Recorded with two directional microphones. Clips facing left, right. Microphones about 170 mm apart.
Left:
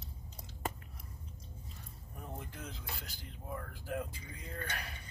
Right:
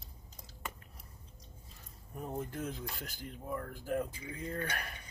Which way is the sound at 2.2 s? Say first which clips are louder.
Right 8 dB; 45° right (ahead or behind).